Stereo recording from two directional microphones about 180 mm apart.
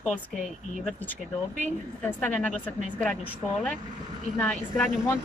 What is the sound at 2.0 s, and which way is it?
Speech, 10° left (ahead or behind).